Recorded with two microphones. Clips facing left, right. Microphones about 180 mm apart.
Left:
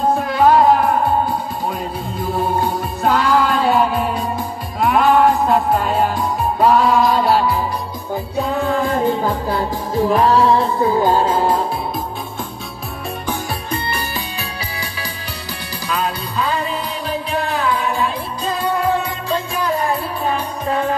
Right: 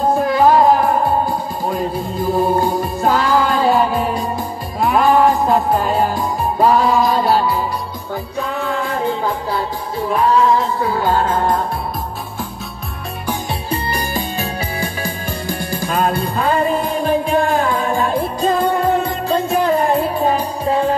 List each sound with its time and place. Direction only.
0.2 s music: centre (ahead or behind)
2.3 s music: centre (ahead or behind)
9.9 s music: 35° left (ahead or behind)
10.8 s music: 20° left (ahead or behind)
13.7 s music: 40° right (ahead or behind)